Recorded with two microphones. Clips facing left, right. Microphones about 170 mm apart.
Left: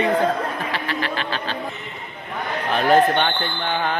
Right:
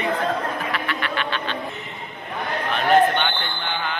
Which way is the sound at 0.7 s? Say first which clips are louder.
Left 1 dB; 30° left (ahead or behind).